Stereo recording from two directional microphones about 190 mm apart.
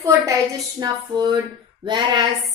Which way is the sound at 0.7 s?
20° right (ahead or behind).